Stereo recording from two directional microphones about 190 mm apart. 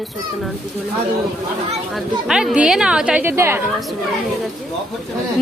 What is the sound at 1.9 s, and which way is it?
A woman's voice, centre (ahead or behind).